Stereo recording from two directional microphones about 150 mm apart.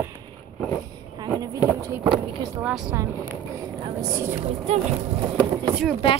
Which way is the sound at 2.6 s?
5° right (ahead or behind).